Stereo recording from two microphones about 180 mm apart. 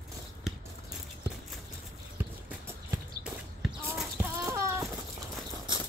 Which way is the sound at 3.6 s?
Centre (ahead or behind).